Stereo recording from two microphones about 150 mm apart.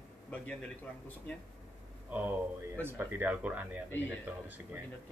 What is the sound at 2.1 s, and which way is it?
Speech, 10° right (ahead or behind).